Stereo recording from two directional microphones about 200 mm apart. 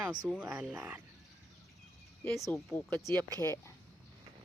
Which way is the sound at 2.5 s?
10° left (ahead or behind).